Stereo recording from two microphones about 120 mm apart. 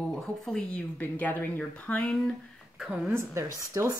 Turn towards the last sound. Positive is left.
turn(degrees=-30)  # may be behind; listen again after turning